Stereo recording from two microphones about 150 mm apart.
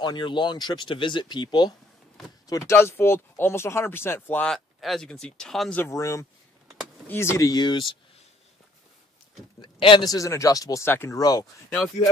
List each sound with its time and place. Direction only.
0.0 s speech: 30° left (ahead or behind); by 4.5 s 15° left (ahead or behind)
4.5 s speech: centre (ahead or behind)
5.8 s speech: 20° left (ahead or behind)
9.6 s speech: 35° left (ahead or behind)